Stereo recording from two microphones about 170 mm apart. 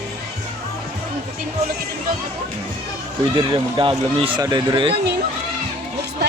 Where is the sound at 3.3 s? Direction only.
30° right (ahead or behind).